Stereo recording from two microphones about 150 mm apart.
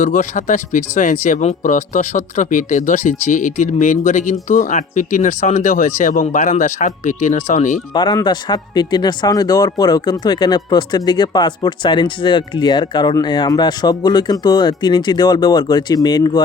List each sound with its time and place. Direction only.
0.0 s speech: 55° left (ahead or behind)
6.0 s speech: 60° left (ahead or behind)
7.9 s speech: 30° left (ahead or behind)